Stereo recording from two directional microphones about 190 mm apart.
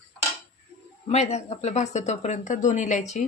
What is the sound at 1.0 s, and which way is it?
Speech, 35° left (ahead or behind).